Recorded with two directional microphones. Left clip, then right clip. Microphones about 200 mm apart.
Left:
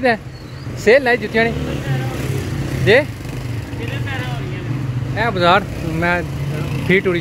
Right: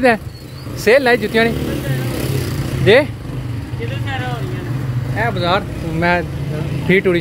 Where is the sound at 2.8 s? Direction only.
10° right (ahead or behind).